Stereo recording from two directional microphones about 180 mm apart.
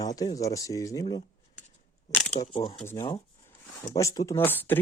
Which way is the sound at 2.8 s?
15° left (ahead or behind).